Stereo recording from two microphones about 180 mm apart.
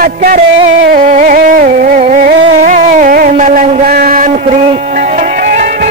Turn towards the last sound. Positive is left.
turn(degrees=-45)  # may be behind; listen again after turning